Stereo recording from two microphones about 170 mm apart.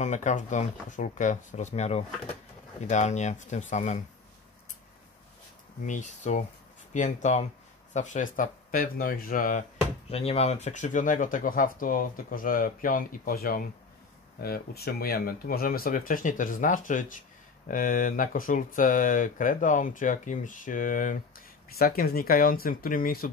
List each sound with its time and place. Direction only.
0.0 s speech: 45° left (ahead or behind)
5.9 s speech: 45° left (ahead or behind)
10.1 s speech: 35° left (ahead or behind); by 23.3 s 55° left (ahead or behind)